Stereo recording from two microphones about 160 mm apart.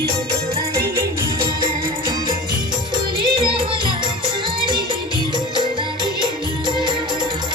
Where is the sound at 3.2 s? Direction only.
30° right (ahead or behind).